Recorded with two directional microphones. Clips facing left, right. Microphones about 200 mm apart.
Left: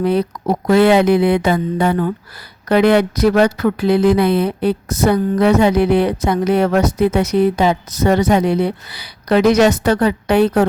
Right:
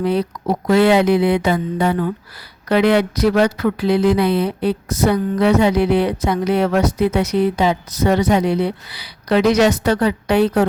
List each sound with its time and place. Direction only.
0.0 s a woman's voice: 50° left (ahead or behind)